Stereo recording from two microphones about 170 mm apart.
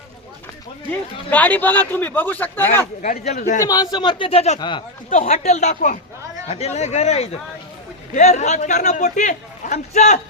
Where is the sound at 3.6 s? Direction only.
20° left (ahead or behind); by 4.6 s 40° left (ahead or behind).